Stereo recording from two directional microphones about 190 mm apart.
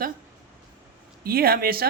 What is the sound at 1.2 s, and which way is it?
Speech, 50° right (ahead or behind).